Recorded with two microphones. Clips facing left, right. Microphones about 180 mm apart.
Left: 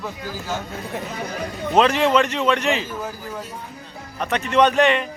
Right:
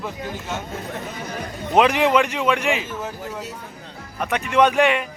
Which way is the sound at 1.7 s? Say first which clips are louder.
Even; 15° right (ahead or behind).